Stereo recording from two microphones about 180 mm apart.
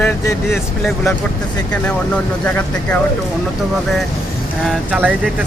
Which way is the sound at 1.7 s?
5° left (ahead or behind).